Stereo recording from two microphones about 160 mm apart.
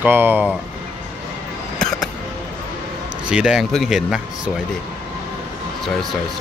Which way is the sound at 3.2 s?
5° right (ahead or behind).